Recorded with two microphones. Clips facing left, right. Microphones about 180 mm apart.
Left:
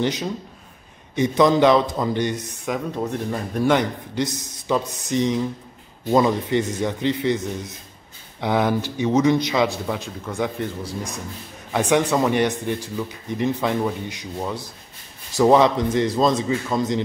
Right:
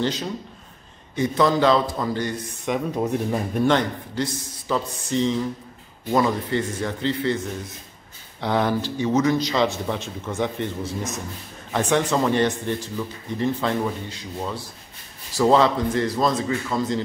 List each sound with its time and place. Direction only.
0.0 s a man's voice: 15° left (ahead or behind)
2.7 s speech: centre (ahead or behind)
3.0 s a man's voice: 15° right (ahead or behind)
3.6 s a man's voice: 15° left (ahead or behind)
8.4 s a man's voice: 15° left (ahead or behind)
9.8 s speech: centre (ahead or behind)
11.7 s a man's voice: 15° left (ahead or behind)